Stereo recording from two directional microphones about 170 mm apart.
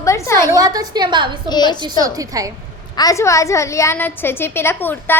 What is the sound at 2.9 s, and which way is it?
A woman's voice, 20° left (ahead or behind).